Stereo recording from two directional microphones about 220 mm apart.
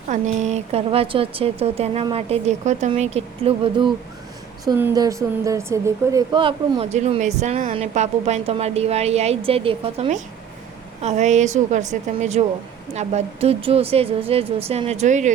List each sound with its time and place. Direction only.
0.1 s a woman's voice: 30° right (ahead or behind)